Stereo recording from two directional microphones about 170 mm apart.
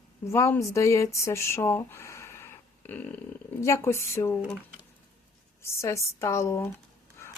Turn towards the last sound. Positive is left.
turn(degrees=15)  # may be behind; listen again after turning